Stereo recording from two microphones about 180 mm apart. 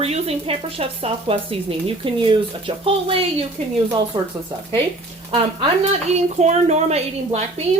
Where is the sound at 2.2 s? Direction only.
30° right (ahead or behind).